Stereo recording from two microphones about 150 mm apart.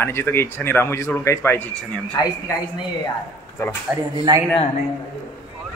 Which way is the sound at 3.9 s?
10° right (ahead or behind).